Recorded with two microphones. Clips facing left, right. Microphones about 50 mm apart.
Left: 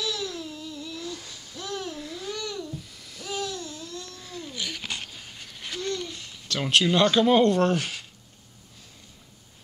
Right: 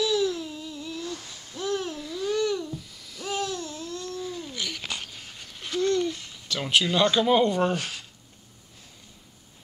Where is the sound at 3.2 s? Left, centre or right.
Centre.